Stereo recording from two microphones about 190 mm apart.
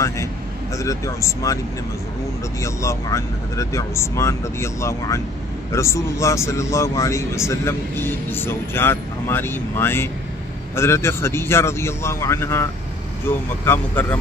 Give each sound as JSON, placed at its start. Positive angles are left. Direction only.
{"t": 0.7, "sound": "a man's voice", "side_deg": 15}
{"t": 2.6, "sound": "a man's voice", "side_deg": 15}